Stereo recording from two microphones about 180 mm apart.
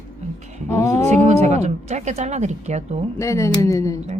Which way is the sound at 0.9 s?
40° right (ahead or behind).